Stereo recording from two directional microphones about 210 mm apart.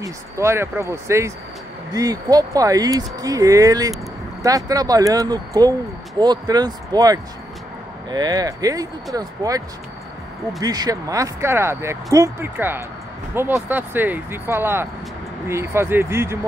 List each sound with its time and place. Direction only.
0.0 s speech: 15° right (ahead or behind)
10.6 s speech: 20° right (ahead or behind)